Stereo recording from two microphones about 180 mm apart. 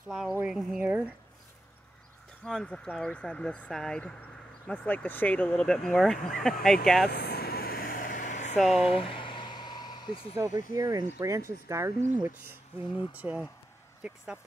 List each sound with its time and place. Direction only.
0.1 s speech: 5° right (ahead or behind)
2.4 s speech: 5° left (ahead or behind)
7.1 s vehicle: 60° left (ahead or behind); by 8.5 s 45° left (ahead or behind)
8.5 s speech: centre (ahead or behind)
8.8 s a sound: 30° left (ahead or behind)
10.7 s speech: 20° right (ahead or behind)